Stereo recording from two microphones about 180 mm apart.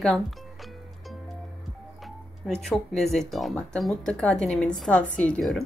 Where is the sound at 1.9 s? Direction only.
Centre (ahead or behind).